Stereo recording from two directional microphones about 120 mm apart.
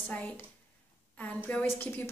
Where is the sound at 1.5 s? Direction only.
10° left (ahead or behind).